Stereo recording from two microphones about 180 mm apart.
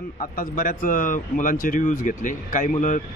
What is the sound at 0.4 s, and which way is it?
Speech, 50° left (ahead or behind).